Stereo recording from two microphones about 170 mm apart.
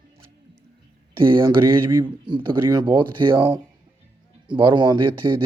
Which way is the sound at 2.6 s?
25° right (ahead or behind).